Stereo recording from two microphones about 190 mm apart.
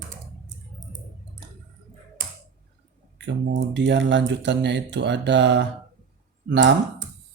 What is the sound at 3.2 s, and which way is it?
Speech, 70° right (ahead or behind).